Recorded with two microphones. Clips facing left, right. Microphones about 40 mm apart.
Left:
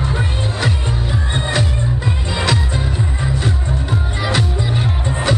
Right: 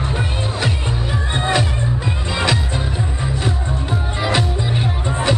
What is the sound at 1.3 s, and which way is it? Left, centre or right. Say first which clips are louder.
Music: right 2 dB; centre.